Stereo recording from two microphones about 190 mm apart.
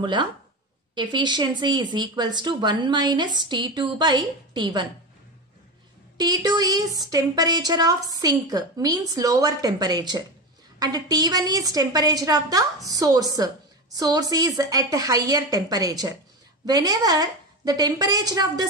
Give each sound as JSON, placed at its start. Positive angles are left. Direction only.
{"t": 0.0, "sound": "a woman's voice", "side_deg": -25}
{"t": 6.1, "sound": "a woman's voice", "side_deg": -20}